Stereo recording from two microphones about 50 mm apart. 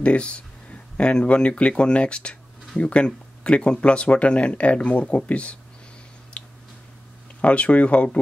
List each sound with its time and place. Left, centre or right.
0.0 s speech: left
6.4 s a sound: left
7.4 s speech: left